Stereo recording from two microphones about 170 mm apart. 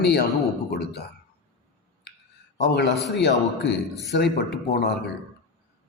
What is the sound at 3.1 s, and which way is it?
Speech, 80° left.